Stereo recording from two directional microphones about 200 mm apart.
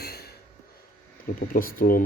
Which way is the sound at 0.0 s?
50° left (ahead or behind).